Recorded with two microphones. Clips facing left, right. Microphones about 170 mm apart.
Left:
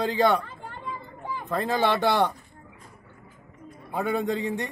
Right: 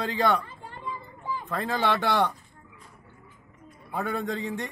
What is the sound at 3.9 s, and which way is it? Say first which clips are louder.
Speech: left 4 dB; 5° left (ahead or behind).